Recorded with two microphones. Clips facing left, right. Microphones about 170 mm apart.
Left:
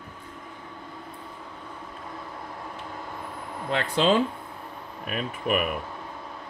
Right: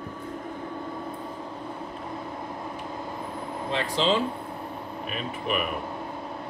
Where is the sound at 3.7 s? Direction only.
60° left (ahead or behind).